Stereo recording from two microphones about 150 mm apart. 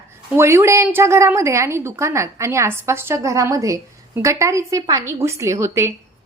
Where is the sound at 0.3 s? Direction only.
15° right (ahead or behind).